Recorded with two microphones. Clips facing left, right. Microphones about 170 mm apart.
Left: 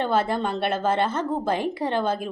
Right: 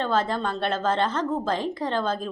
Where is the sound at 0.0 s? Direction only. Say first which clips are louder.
Left 2 dB; 10° left (ahead or behind).